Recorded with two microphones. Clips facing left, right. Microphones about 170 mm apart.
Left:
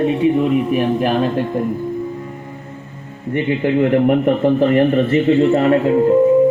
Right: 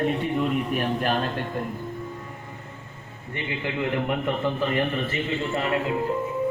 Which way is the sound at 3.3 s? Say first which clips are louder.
Left 13 dB; 45° left (ahead or behind).